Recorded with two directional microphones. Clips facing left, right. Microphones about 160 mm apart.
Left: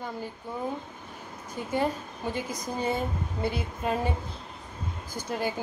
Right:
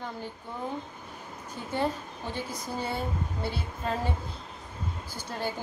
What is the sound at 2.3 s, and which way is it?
Speech, 15° left (ahead or behind).